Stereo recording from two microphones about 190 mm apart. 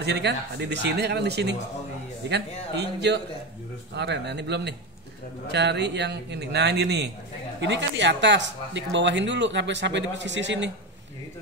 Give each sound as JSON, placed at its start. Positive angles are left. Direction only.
{"t": 0.0, "sound": "speech", "side_deg": -65}